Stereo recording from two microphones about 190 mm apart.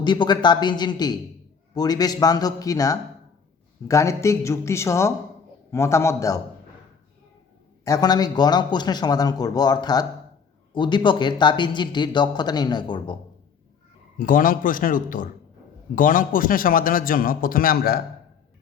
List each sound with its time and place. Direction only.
0.0 s speech: 25° left (ahead or behind)
7.9 s speech: 20° left (ahead or behind)
14.2 s a man's voice: 45° left (ahead or behind)